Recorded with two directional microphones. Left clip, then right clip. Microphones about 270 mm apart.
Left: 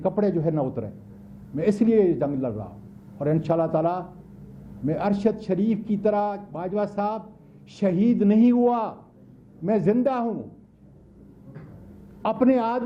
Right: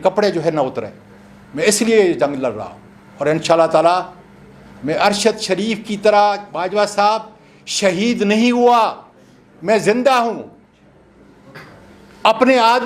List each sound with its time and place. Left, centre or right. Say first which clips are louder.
0.0 s a man's voice: right 9 dB; centre
12.2 s a man's voice: right 10 dB; centre